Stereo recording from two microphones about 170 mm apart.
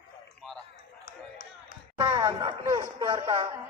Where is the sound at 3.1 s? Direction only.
30° right (ahead or behind).